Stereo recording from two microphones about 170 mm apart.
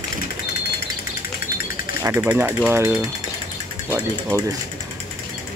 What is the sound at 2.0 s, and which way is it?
Speech, 15° right (ahead or behind).